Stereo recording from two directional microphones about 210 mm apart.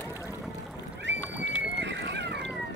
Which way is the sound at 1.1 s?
60° right (ahead or behind).